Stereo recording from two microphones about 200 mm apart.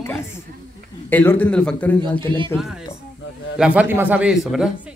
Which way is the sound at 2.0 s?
25° right (ahead or behind).